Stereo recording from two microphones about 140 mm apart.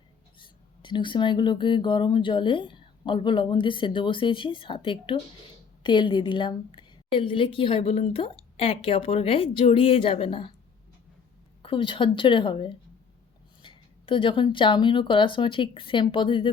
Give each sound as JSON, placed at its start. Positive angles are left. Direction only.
{"t": 0.3, "sound": "speech", "side_deg": 35}
{"t": 11.6, "sound": "speech", "side_deg": 40}